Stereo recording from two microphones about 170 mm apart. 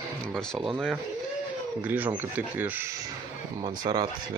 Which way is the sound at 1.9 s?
10° right (ahead or behind).